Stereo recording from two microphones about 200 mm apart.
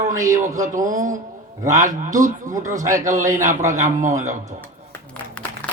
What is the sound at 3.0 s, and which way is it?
A man's voice, 40° right (ahead or behind).